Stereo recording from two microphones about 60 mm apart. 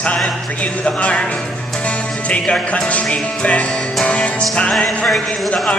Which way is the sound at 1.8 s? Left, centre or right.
Left.